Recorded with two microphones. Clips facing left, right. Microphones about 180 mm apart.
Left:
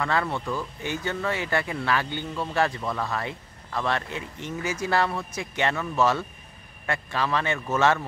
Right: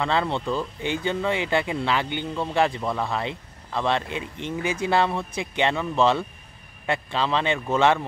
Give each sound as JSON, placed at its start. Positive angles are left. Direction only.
{"t": 0.0, "sound": "speech", "side_deg": -20}